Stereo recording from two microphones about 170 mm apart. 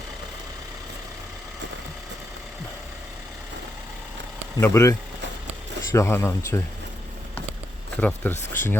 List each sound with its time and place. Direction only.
4.5 s speech: 15° left (ahead or behind)
8.0 s speech: 10° left (ahead or behind)